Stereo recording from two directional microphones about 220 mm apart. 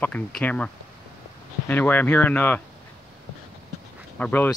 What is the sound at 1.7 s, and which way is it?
Speech, 10° left (ahead or behind).